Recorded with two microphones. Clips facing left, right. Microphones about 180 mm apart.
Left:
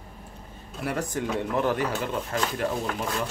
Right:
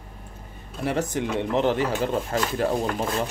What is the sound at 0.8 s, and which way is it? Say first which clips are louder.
Speech: right 3 dB; 25° right (ahead or behind).